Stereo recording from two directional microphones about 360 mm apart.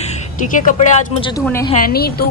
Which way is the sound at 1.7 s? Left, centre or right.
Left.